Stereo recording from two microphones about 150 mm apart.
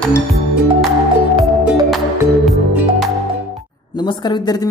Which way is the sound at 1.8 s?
Centre (ahead or behind).